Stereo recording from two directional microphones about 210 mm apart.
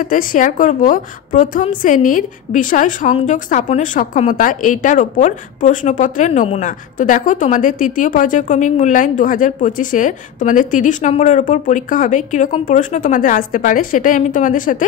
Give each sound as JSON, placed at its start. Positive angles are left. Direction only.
{"t": 0.0, "sound": "a woman's voice", "side_deg": 40}